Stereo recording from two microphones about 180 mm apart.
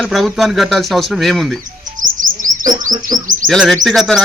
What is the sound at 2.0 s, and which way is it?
Chirp, 45° right (ahead or behind).